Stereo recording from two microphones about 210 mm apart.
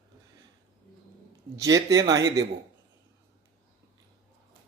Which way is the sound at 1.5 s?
15° right (ahead or behind).